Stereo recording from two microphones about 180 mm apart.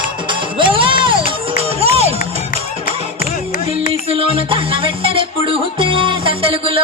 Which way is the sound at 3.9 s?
30° right (ahead or behind).